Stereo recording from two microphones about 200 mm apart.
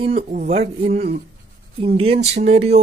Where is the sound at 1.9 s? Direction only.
30° right (ahead or behind).